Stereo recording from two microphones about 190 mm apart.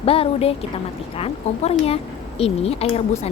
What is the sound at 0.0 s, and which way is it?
A woman's voice, 30° left (ahead or behind).